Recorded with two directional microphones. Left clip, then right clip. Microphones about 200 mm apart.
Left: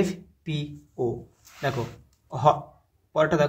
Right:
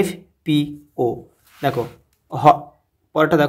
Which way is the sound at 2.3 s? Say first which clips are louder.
Right 8 dB; 35° right (ahead or behind).